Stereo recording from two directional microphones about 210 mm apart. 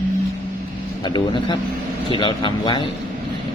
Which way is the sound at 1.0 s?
20° left (ahead or behind).